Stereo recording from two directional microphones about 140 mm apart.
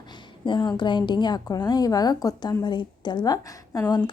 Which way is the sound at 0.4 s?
35° left (ahead or behind).